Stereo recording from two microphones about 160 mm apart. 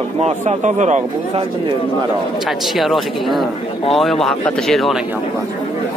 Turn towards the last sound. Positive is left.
turn(degrees=0)  # may be behind; listen again after turning